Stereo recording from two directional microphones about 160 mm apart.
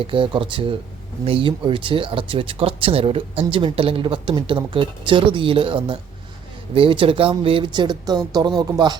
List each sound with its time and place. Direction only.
0.0 s speech: 35° right (ahead or behind)